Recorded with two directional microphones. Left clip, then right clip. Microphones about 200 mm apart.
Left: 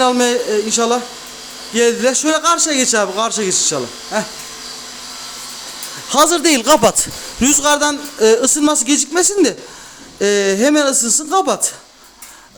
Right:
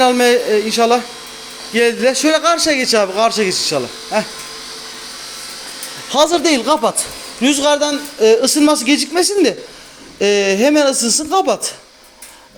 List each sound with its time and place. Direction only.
0.0 s a man's voice: centre (ahead or behind)
6.1 s a man's voice: 25° left (ahead or behind)